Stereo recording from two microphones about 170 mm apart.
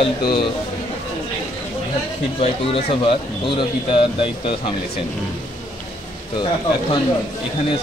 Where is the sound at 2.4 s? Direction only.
35° left (ahead or behind).